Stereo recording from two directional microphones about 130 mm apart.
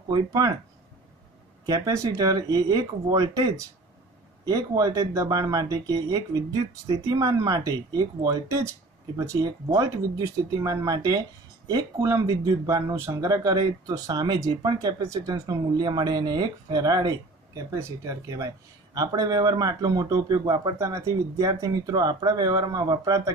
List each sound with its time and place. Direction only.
0.1 s speech: 30° right (ahead or behind)
1.7 s speech: 25° right (ahead or behind)